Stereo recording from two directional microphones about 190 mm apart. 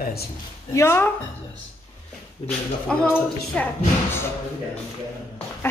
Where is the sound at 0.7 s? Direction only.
15° left (ahead or behind).